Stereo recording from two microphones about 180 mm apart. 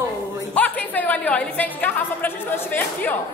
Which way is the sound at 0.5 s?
10° left (ahead or behind).